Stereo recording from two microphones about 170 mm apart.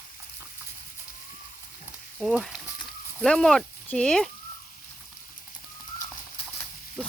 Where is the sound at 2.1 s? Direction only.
Centre (ahead or behind).